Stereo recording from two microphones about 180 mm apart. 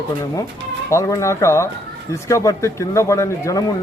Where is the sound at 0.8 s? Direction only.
15° left (ahead or behind).